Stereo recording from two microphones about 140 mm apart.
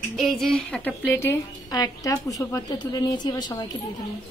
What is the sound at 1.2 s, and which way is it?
A woman's voice, 20° left (ahead or behind).